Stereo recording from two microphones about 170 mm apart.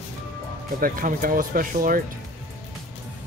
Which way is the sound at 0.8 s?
55° right (ahead or behind).